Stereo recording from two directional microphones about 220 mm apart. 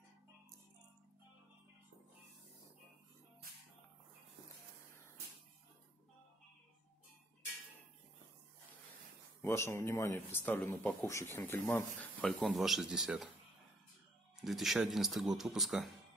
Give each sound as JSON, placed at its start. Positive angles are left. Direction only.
{"t": 9.4, "sound": "speech", "side_deg": 10}
{"t": 14.3, "sound": "speech", "side_deg": 0}